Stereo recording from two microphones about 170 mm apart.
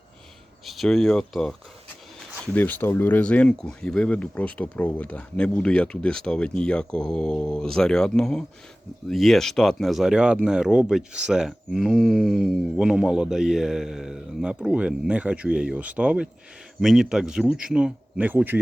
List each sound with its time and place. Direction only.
0.6 s speech: centre (ahead or behind)